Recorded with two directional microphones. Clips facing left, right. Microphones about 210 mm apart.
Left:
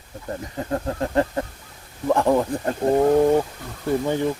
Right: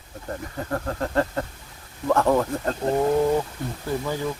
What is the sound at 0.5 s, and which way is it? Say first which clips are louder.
Speech: left 3 dB; 20° left (ahead or behind).